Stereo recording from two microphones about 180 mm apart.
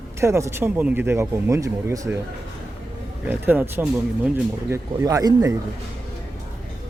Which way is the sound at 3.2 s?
10° right (ahead or behind).